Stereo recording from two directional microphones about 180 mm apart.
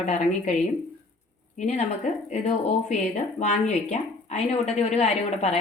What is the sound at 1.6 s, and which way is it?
Speech, 40° left (ahead or behind).